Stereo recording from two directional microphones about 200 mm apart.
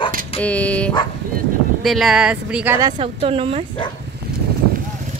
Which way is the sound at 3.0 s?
30° right (ahead or behind).